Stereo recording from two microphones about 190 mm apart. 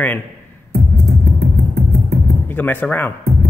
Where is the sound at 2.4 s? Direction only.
10° left (ahead or behind).